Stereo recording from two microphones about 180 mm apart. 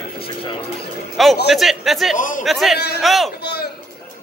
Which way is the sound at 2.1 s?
45° left (ahead or behind).